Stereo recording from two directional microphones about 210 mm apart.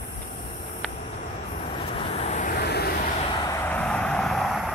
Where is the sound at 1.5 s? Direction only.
30° left (ahead or behind); by 3.1 s 45° left (ahead or behind).